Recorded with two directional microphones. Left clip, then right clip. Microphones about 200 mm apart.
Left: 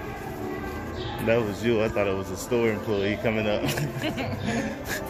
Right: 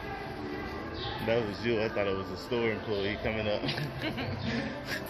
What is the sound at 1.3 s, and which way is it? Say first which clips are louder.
Speech: left 6 dB; 25° left (ahead or behind).